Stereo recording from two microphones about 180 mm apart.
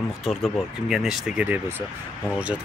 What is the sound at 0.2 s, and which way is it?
Speech, centre (ahead or behind).